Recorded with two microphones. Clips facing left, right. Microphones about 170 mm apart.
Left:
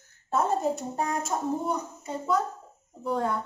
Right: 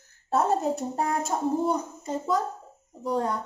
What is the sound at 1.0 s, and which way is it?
Speech, 30° right (ahead or behind).